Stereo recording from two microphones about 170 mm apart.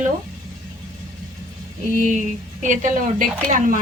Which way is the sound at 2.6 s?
50° right (ahead or behind).